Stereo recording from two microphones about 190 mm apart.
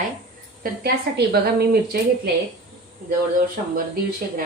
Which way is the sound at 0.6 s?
55° right (ahead or behind).